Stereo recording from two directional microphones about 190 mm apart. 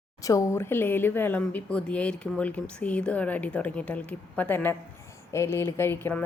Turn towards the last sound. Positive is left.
turn(degrees=10)  # may be behind; listen again after turning